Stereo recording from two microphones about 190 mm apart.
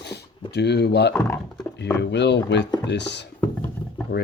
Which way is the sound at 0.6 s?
60° left (ahead or behind).